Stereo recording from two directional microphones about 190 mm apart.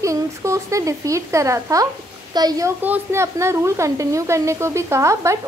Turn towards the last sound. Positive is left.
turn(degrees=-15)  # may be behind; listen again after turning